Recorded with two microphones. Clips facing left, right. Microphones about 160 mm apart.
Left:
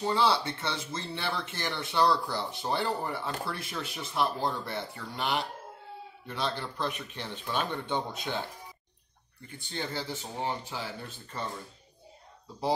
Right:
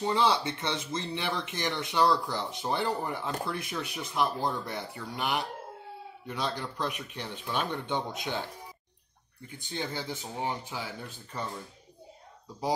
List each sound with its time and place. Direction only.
0.0 s speech: 20° right (ahead or behind)
9.6 s speech: 15° right (ahead or behind)